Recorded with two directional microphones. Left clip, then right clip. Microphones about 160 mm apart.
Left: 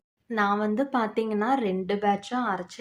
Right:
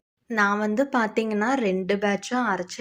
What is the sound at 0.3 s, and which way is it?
Speech, 15° right (ahead or behind).